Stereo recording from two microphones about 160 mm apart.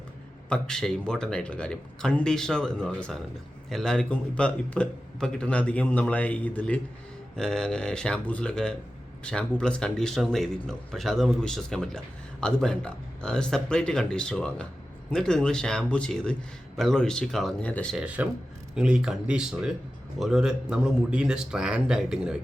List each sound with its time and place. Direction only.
0.4 s speech: 5° left (ahead or behind)
17.9 s speech: 5° right (ahead or behind)